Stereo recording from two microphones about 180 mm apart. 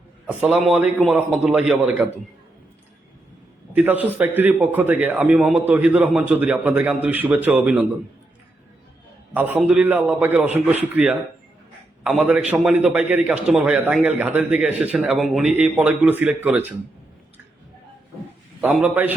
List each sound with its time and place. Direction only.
0.3 s a man's voice: 5° right (ahead or behind)
3.8 s a man's voice: 10° right (ahead or behind)
9.3 s a man's voice: 10° right (ahead or behind)
18.7 s a man's voice: 10° right (ahead or behind)